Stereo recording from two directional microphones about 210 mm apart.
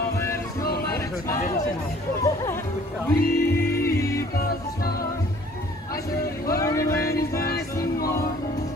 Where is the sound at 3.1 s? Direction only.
45° left (ahead or behind).